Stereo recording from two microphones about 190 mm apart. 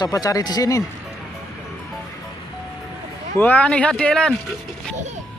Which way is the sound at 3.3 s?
10° left (ahead or behind).